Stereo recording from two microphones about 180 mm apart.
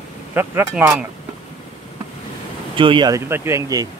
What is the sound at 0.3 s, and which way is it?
Speech, 10° right (ahead or behind).